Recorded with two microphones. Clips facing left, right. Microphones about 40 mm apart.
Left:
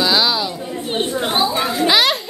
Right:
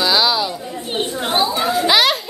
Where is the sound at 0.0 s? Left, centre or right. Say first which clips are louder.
Even; centre.